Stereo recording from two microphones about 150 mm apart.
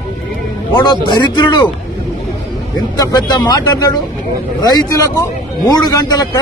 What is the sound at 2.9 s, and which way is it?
A man's voice, 25° left (ahead or behind).